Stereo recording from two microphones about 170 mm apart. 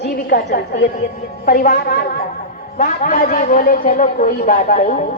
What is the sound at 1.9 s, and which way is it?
A man's voice, 60° left (ahead or behind).